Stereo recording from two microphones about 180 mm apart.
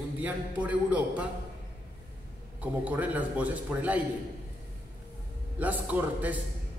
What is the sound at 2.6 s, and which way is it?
A man's voice, 10° right (ahead or behind).